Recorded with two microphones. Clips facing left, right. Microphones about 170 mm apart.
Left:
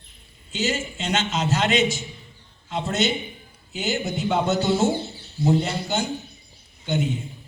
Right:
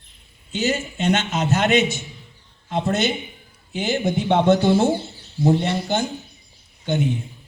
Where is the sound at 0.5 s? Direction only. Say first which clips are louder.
Right 3 dB; 60° right (ahead or behind).